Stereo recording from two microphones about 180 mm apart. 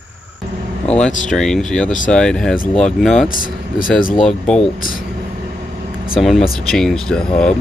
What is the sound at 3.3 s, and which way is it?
Speech, 50° left (ahead or behind).